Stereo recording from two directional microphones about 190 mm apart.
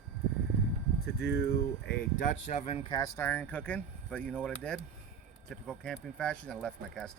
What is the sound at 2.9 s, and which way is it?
Speech, 20° left (ahead or behind).